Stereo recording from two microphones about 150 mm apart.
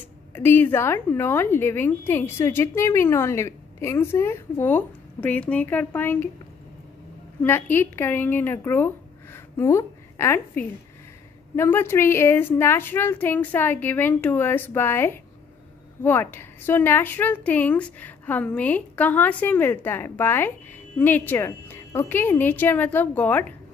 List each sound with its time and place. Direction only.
0.3 s a woman's voice: 15° left (ahead or behind)
7.4 s a woman's voice: 15° left (ahead or behind)